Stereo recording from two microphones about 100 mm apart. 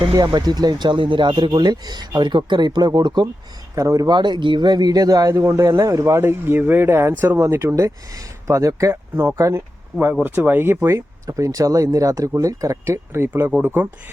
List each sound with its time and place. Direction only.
0.1 s speech: 45° right (ahead or behind)
3.8 s speech: 35° right (ahead or behind); by 7.3 s 20° right (ahead or behind)
7.3 s speech: 30° right (ahead or behind)